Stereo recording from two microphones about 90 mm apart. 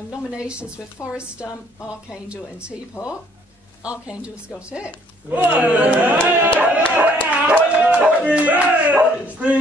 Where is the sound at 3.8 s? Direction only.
15° right (ahead or behind).